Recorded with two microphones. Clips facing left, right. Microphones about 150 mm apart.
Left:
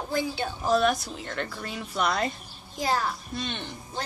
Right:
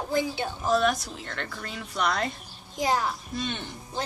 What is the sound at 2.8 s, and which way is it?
Speech, 15° right (ahead or behind).